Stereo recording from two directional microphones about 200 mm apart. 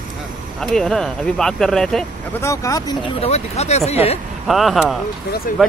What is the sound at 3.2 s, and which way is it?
Speech, 30° left (ahead or behind).